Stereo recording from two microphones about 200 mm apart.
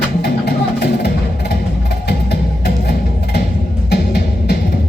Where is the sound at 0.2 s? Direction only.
55° left (ahead or behind).